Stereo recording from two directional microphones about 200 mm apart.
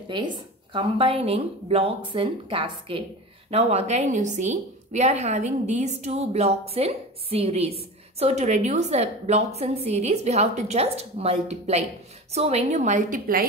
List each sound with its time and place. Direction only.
0.7 s a woman's voice: 25° right (ahead or behind); by 13.5 s 45° right (ahead or behind)